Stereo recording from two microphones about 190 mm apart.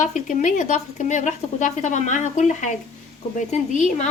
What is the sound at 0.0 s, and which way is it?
Speech, 40° left (ahead or behind).